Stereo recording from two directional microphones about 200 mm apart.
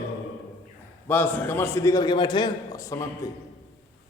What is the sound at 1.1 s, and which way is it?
A man's voice, 10° left (ahead or behind).